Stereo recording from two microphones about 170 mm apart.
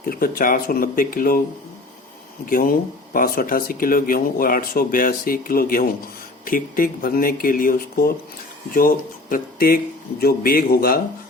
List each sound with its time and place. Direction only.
0.1 s speech: 60° left (ahead or behind)
2.5 s speech: 60° left (ahead or behind)